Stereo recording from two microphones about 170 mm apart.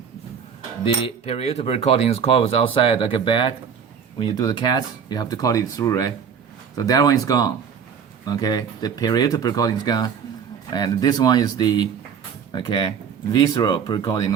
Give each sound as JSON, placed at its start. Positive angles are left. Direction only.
{"t": 1.0, "sound": "speech", "side_deg": 35}